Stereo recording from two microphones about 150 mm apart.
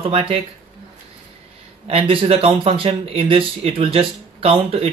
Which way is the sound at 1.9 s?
35° right (ahead or behind).